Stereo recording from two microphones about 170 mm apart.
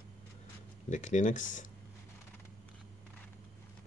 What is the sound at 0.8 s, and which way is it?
Speech, 45° left (ahead or behind).